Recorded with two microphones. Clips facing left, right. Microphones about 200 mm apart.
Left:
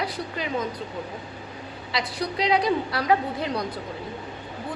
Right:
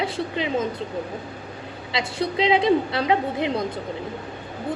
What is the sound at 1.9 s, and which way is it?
A woman's voice, 25° right (ahead or behind).